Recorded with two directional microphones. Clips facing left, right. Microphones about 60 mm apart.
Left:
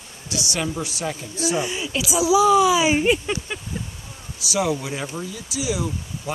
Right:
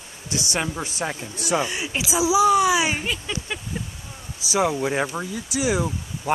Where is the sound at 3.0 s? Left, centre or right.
Left.